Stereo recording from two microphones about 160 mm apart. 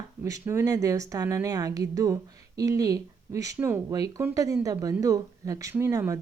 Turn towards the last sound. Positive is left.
turn(degrees=-20)  # may be behind; listen again after turning